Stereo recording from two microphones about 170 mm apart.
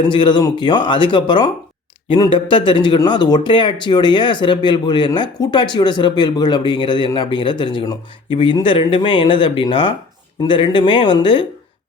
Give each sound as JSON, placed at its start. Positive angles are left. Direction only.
{"t": 0.0, "sound": "speech", "side_deg": 25}